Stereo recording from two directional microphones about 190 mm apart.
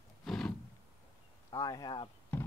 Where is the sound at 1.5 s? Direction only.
20° left (ahead or behind).